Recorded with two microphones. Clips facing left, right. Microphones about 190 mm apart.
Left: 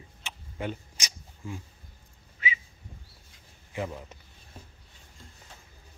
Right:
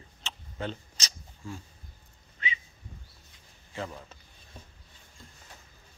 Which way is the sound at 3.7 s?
15° left (ahead or behind).